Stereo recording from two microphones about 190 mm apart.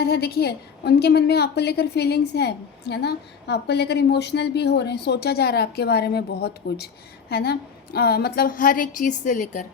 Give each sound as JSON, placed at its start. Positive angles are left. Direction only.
{"t": 0.0, "sound": "a woman's voice", "side_deg": 55}